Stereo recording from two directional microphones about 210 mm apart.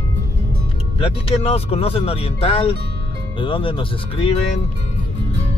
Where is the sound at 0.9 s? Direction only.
30° left (ahead or behind).